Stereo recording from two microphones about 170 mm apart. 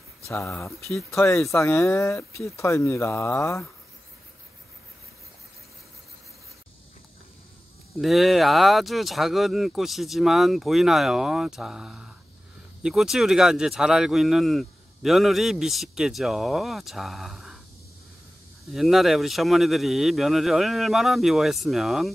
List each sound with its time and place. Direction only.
0.3 s speech: 15° left (ahead or behind)
8.0 s speech: centre (ahead or behind)
18.7 s speech: centre (ahead or behind)